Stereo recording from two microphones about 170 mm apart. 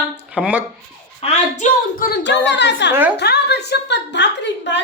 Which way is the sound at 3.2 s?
75° left (ahead or behind).